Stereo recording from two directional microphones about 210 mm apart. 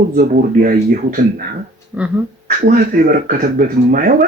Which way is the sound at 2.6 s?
45° right (ahead or behind).